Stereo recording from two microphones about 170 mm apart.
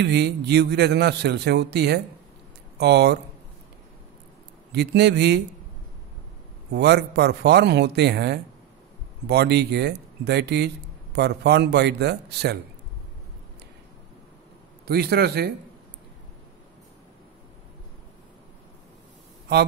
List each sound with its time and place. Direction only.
0.0 s a man's voice: 75° right (ahead or behind)
4.7 s a man's voice: 75° right (ahead or behind)
6.7 s a man's voice: 80° right
14.9 s a man's voice: 70° right (ahead or behind)